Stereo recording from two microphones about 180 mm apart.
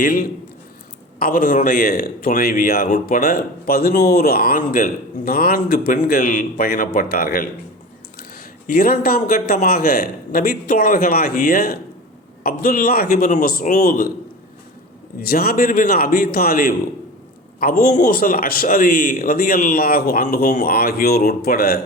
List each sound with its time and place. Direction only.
0.0 s a man's voice: 45° left (ahead or behind)
8.6 s a man's voice: 50° left (ahead or behind)
15.2 s speech: 55° left (ahead or behind)